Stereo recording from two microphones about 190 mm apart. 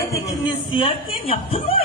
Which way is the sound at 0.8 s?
30° left (ahead or behind).